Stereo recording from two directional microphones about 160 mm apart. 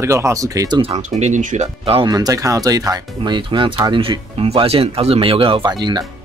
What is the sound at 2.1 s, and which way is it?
Speech, 25° right (ahead or behind).